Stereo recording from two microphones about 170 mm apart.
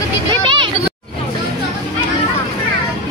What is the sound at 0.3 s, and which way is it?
Vehicle, 30° right (ahead or behind).